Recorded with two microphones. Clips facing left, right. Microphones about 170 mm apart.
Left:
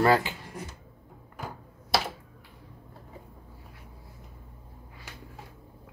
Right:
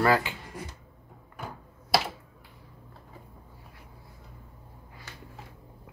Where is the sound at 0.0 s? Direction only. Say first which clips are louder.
Left 1 dB; 25° left (ahead or behind).